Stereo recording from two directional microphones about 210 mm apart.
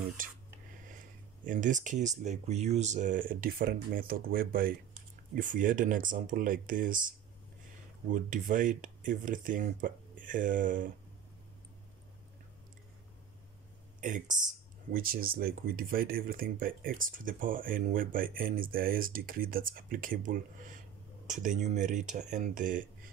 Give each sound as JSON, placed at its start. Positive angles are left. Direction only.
{"t": 0.2, "sound": "speech", "side_deg": -40}
{"t": 1.4, "sound": "speech", "side_deg": -40}
{"t": 14.0, "sound": "speech", "side_deg": -40}